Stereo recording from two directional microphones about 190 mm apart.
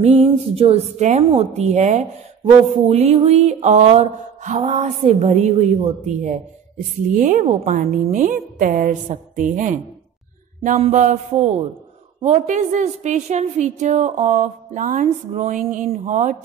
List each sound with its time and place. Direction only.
0.0 s a woman's voice: 30° right (ahead or behind)